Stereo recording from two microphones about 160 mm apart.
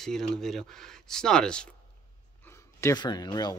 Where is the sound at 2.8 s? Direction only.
20° left (ahead or behind).